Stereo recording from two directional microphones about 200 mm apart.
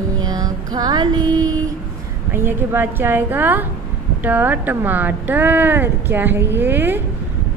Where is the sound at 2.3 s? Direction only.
10° right (ahead or behind).